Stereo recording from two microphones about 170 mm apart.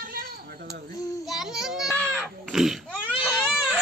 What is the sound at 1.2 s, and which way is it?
Child singing, centre (ahead or behind).